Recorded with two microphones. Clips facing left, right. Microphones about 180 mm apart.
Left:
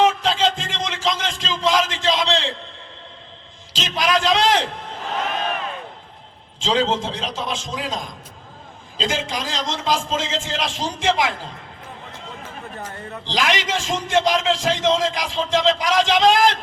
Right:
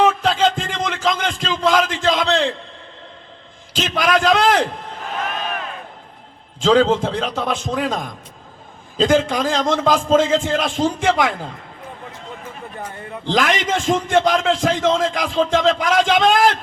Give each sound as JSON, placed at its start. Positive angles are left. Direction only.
{"t": 0.0, "sound": "a sound", "side_deg": -55}
{"t": 3.7, "sound": "a man's voice", "side_deg": -55}
{"t": 6.6, "sound": "a man's voice", "side_deg": -55}
{"t": 13.2, "sound": "a man's voice", "side_deg": -50}